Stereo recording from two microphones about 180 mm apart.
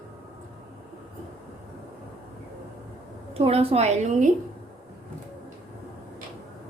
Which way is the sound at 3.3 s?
35° right (ahead or behind).